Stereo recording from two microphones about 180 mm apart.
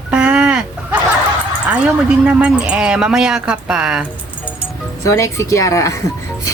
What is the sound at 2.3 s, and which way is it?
Speech, 5° right (ahead or behind).